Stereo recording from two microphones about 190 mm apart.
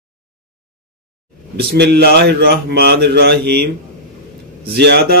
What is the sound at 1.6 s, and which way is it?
Mantra, 55° right (ahead or behind).